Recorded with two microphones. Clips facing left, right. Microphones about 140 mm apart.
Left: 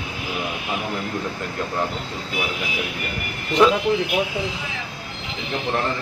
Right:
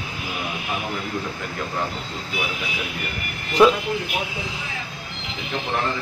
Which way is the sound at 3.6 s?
5° right (ahead or behind).